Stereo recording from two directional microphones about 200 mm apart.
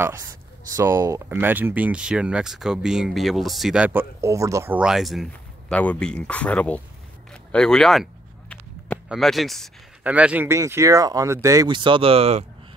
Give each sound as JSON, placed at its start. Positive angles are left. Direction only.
{"t": 0.0, "sound": "speech", "side_deg": -15}
{"t": 7.5, "sound": "a sound", "side_deg": 5}
{"t": 9.1, "sound": "speech", "side_deg": 0}